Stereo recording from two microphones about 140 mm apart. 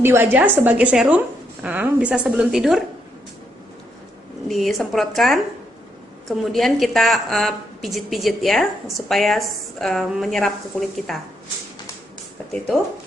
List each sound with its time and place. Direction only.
0.0 s a woman's voice: 15° right (ahead or behind)
4.4 s a woman's voice: centre (ahead or behind)